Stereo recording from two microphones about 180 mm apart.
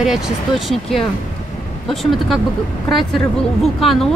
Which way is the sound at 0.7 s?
Centre (ahead or behind).